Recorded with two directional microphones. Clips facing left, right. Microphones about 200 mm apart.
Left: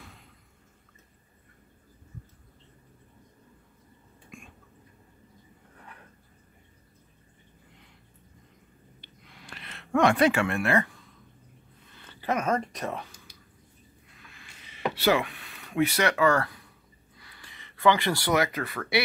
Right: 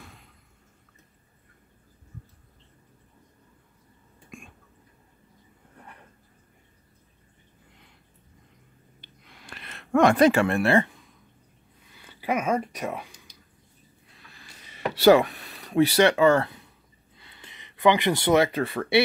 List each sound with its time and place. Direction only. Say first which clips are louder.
9.5 s speech: right 3 dB; 45° right (ahead or behind); by 10.9 s 30° right (ahead or behind)
11.9 s speech: right 2 dB; 10° right (ahead or behind)
14.1 s a sound: right 2 dB; 35° right (ahead or behind)
17.2 s speech: right 2 dB; 25° right (ahead or behind)